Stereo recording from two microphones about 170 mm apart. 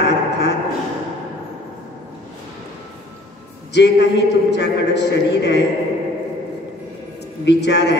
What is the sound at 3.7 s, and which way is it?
A man's voice, 90° left.